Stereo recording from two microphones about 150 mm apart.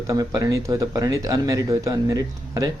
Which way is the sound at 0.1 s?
25° right (ahead or behind).